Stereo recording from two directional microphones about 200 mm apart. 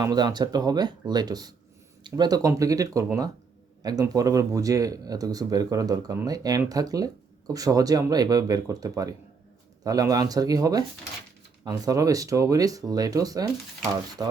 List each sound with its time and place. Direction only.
0.0 s speech: 20° right (ahead or behind)